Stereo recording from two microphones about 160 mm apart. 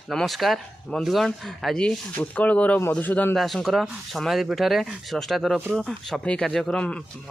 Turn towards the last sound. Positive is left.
turn(degrees=5)  # may be behind; listen again after turning